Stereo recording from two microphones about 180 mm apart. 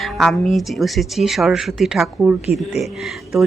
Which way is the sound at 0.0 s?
Centre (ahead or behind).